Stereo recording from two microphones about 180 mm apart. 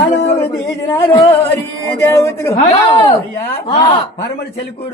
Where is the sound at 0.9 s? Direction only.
15° left (ahead or behind).